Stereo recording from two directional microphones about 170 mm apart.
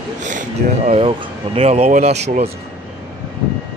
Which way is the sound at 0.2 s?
45° right (ahead or behind).